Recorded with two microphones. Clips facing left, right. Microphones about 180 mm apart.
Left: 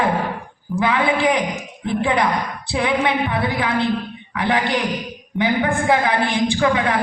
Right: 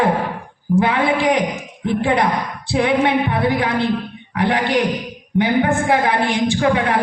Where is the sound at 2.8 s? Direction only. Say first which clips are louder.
Right 3 dB; 55° right (ahead or behind).